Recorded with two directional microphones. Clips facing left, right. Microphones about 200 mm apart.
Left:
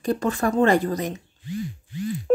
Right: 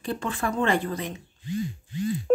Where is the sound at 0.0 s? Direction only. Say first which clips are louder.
Left 6 dB; 40° left (ahead or behind).